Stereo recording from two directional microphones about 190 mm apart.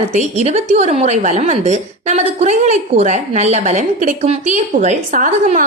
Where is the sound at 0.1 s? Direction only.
35° right (ahead or behind).